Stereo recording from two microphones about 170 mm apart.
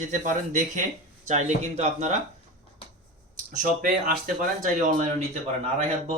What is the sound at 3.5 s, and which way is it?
Speech, 50° right (ahead or behind).